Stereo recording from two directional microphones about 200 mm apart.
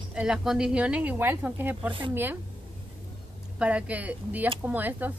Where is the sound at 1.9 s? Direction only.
25° right (ahead or behind).